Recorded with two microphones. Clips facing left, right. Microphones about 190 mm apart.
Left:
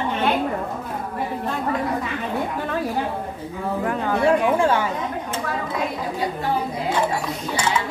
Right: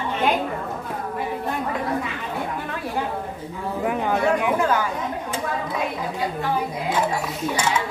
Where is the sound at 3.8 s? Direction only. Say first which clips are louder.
Even; 15° right (ahead or behind).